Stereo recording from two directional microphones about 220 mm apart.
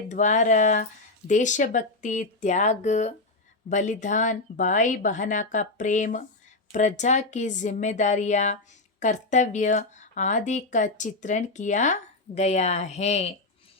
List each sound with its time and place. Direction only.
0.1 s speech: 35° left (ahead or behind)